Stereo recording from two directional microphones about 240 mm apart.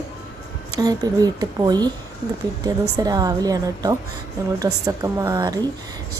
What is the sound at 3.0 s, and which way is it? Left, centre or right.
Speech, centre.